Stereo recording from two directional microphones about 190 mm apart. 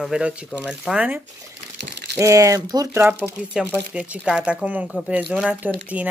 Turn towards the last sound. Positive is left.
turn(degrees=-10)  # may be behind; listen again after turning